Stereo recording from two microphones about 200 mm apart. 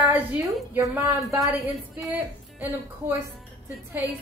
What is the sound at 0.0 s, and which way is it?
A woman's voice, 10° right (ahead or behind).